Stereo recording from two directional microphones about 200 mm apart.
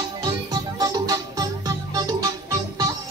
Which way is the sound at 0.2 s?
20° right (ahead or behind).